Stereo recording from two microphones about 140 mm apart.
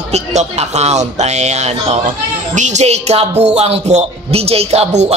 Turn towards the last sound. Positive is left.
turn(degrees=-50)  # may be behind; listen again after turning